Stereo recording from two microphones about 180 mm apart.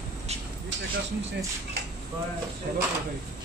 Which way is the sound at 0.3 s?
35° right (ahead or behind).